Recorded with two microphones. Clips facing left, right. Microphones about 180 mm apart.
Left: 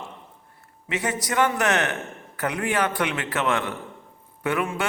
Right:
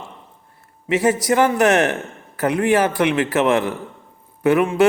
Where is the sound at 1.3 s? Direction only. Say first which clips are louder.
Right 6 dB; 30° right (ahead or behind).